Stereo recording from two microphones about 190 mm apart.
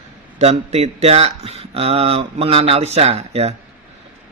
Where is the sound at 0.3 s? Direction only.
35° right (ahead or behind).